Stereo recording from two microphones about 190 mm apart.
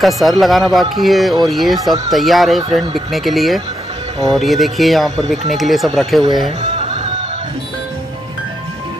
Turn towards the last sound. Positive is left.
turn(degrees=-25)  # may be behind; listen again after turning